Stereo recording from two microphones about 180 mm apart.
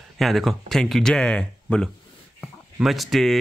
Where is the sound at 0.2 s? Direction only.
Centre (ahead or behind).